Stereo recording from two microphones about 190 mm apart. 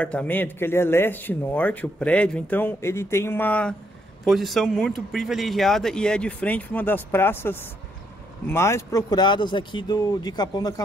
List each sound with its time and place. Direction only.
0.0 s a man's voice: 5° left (ahead or behind)